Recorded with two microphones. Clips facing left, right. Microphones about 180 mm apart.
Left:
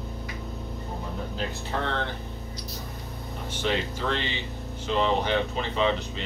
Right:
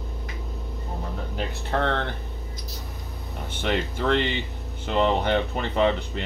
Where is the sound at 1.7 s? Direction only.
55° right (ahead or behind).